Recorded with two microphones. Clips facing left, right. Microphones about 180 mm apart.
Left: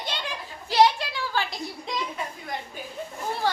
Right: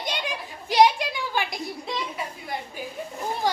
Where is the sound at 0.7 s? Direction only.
15° right (ahead or behind).